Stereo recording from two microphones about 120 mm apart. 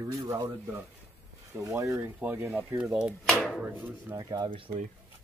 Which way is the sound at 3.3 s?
Centre (ahead or behind).